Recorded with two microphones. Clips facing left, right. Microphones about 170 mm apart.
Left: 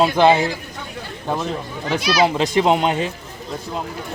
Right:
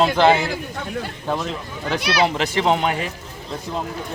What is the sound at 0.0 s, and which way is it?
Speech, 15° left (ahead or behind).